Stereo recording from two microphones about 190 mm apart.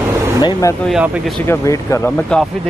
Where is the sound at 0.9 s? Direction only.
Centre (ahead or behind).